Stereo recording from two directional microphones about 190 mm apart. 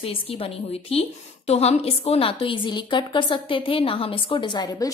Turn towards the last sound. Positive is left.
turn(degrees=20)  # may be behind; listen again after turning